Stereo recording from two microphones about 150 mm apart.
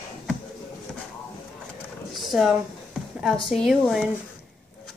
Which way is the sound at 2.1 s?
Centre (ahead or behind).